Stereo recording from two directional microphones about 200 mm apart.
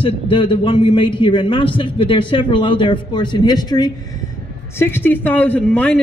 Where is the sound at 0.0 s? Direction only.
25° left (ahead or behind).